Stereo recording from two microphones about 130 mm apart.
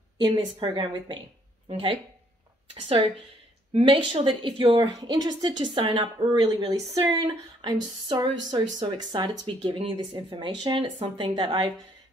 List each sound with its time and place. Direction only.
0.3 s a woman's voice: 40° right (ahead or behind)